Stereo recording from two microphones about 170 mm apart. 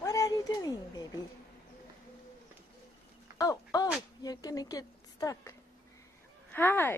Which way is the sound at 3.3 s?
20° left (ahead or behind).